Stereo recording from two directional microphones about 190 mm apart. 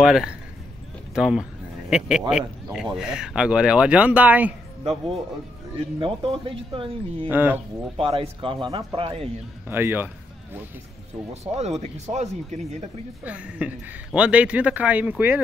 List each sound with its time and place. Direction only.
0.0 s speech: 5° right (ahead or behind)
4.8 s speech: 30° right (ahead or behind)
7.2 s a man's voice: 10° right (ahead or behind)
8.0 s speech: 30° right (ahead or behind)
9.7 s a man's voice: 10° right (ahead or behind)
11.5 s speech: 35° right (ahead or behind)
13.2 s a man's voice: 5° right (ahead or behind)